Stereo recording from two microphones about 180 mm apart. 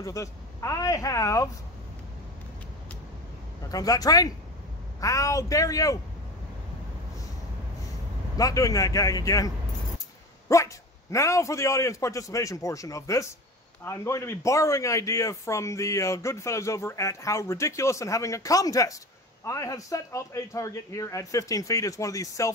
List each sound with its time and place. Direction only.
0.0 s speech: 15° left (ahead or behind)
3.6 s a man's voice: 20° left (ahead or behind)
8.4 s a man's voice: 20° left (ahead or behind)
10.5 s a man's voice: 15° left (ahead or behind)